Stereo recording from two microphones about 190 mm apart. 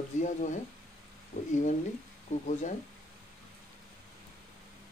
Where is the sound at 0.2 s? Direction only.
40° left (ahead or behind).